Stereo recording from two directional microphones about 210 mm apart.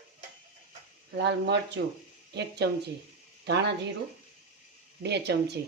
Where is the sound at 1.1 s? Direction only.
55° right (ahead or behind).